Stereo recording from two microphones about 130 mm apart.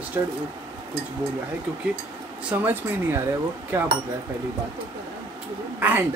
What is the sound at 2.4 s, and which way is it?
Speech, 10° right (ahead or behind).